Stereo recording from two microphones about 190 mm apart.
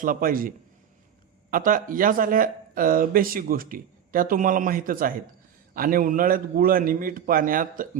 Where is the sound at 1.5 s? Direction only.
45° right (ahead or behind).